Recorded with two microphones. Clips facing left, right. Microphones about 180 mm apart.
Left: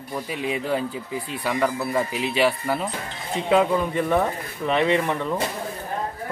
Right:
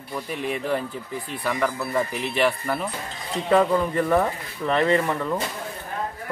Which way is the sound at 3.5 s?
10° left (ahead or behind).